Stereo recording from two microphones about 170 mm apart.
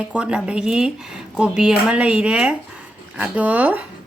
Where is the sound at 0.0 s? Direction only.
5° right (ahead or behind).